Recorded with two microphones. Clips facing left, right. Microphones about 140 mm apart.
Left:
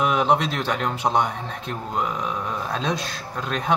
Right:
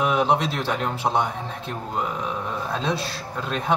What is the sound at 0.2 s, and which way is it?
Speech, 35° right (ahead or behind).